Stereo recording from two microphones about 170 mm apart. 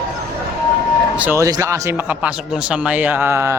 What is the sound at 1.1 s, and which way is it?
Speech, 10° right (ahead or behind).